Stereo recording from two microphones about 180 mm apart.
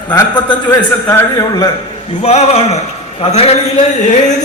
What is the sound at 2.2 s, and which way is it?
A man's voice, 35° left (ahead or behind).